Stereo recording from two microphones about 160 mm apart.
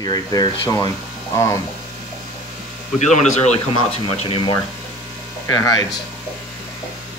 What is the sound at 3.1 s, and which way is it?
Speech, 45° left (ahead or behind).